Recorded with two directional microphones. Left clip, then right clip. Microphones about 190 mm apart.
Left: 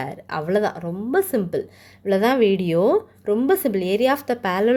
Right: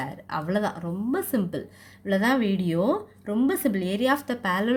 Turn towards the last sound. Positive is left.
turn(degrees=30)  # may be behind; listen again after turning